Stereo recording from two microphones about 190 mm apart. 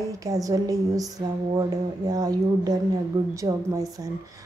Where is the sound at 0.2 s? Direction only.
20° right (ahead or behind).